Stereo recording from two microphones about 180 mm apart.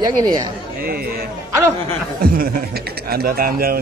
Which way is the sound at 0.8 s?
55° right (ahead or behind).